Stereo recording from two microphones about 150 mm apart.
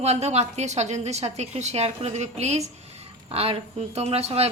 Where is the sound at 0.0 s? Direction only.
45° right (ahead or behind).